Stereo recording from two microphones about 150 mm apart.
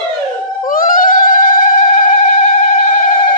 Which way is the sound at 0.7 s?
70° left (ahead or behind).